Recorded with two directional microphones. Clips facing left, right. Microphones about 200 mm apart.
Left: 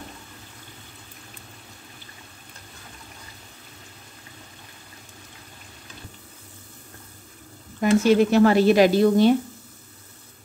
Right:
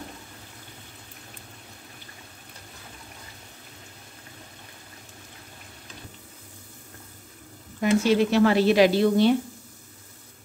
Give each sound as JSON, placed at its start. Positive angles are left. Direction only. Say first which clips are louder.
{"t": 7.8, "sound": "a woman's voice", "louder": "left 3 dB", "side_deg": 45}